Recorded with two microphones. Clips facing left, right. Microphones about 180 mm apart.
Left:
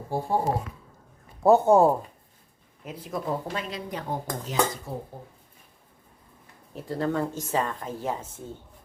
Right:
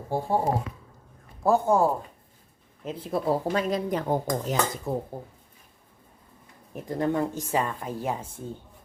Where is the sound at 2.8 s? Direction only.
30° right (ahead or behind).